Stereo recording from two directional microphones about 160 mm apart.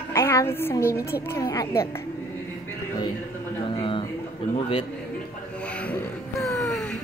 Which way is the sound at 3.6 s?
35° left (ahead or behind).